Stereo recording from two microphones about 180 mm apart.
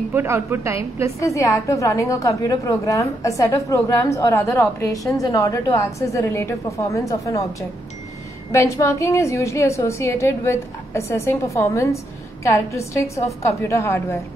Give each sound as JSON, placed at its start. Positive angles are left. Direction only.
{"t": 0.1, "sound": "a woman's voice", "side_deg": -10}
{"t": 1.2, "sound": "a woman's voice", "side_deg": 15}
{"t": 8.5, "sound": "a woman's voice", "side_deg": 15}